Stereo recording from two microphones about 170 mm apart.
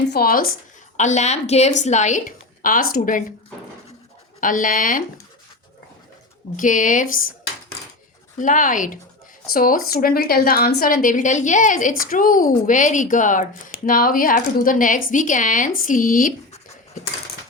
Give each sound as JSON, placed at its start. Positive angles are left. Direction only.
{"t": 0.1, "sound": "speech", "side_deg": 60}
{"t": 0.9, "sound": "a woman's voice", "side_deg": 45}
{"t": 4.4, "sound": "a woman's voice", "side_deg": 50}
{"t": 6.6, "sound": "a woman's voice", "side_deg": 50}
{"t": 8.4, "sound": "a woman's voice", "side_deg": 50}